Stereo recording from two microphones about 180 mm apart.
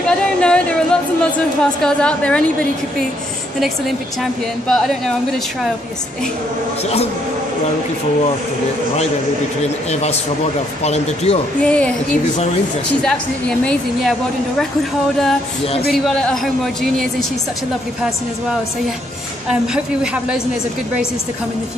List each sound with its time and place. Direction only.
0.4 s a sound: 5° left (ahead or behind)
1.6 s a woman's voice: 5° left (ahead or behind)
4.2 s a woman's voice: centre (ahead or behind)
9.6 s speech: 35° left (ahead or behind)
11.6 s a woman's voice: 5° left (ahead or behind)
15.9 s a woman's voice: centre (ahead or behind)
19.7 s a woman's voice: 5° right (ahead or behind)